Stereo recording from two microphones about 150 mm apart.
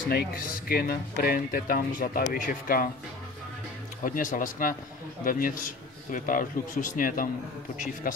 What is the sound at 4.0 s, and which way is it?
A man's voice, 65° left (ahead or behind).